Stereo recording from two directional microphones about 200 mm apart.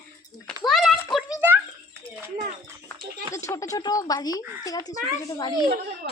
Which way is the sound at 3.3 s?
15° left (ahead or behind).